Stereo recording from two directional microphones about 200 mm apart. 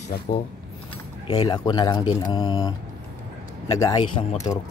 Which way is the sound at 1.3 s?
25° left (ahead or behind).